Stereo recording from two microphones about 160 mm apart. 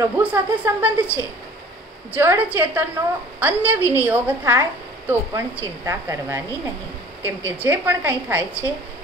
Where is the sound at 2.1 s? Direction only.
10° right (ahead or behind).